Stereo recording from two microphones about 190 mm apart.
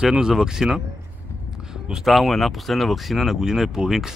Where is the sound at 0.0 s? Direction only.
5° right (ahead or behind).